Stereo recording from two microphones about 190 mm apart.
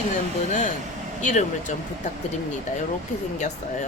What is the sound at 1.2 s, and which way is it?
Speech, 40° left (ahead or behind).